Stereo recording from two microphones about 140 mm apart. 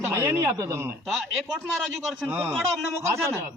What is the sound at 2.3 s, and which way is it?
Speech, 10° right (ahead or behind).